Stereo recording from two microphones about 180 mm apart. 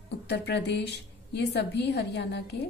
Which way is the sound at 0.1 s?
70° left (ahead or behind).